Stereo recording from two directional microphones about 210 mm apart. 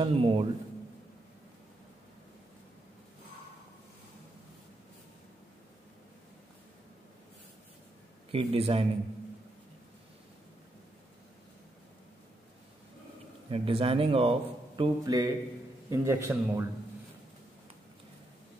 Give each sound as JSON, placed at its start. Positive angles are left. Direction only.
{"t": 0.0, "sound": "speech", "side_deg": -25}
{"t": 8.3, "sound": "speech", "side_deg": -30}
{"t": 13.5, "sound": "speech", "side_deg": -25}
{"t": 14.8, "sound": "a man's voice", "side_deg": -20}